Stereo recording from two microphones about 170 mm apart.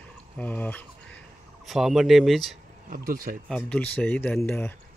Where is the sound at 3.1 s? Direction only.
60° right (ahead or behind).